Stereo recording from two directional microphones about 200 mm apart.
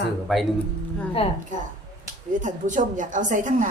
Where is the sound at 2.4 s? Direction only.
40° right (ahead or behind).